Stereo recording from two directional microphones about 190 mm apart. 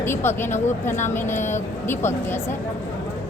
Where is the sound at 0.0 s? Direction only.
15° left (ahead or behind).